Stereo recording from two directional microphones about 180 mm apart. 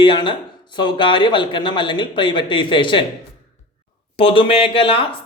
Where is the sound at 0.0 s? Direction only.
25° left (ahead or behind).